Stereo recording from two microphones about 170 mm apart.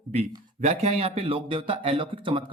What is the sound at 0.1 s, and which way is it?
Speech, 40° right (ahead or behind).